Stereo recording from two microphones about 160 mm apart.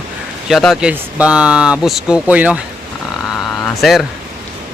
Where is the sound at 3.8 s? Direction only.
Centre (ahead or behind).